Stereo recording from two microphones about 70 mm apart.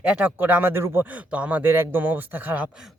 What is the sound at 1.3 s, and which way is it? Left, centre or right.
Speech, centre.